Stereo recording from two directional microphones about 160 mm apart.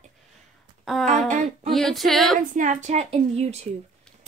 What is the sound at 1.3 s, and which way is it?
Speech, 50° right (ahead or behind).